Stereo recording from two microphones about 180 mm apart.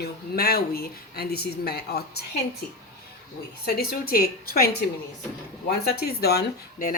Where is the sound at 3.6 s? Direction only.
55° left (ahead or behind).